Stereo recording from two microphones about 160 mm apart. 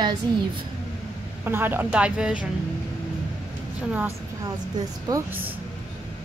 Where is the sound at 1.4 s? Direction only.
10° right (ahead or behind).